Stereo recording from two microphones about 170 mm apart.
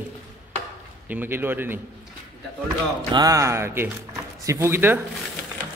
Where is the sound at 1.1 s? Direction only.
10° right (ahead or behind).